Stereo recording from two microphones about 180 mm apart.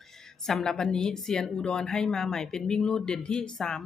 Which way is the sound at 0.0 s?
Centre (ahead or behind).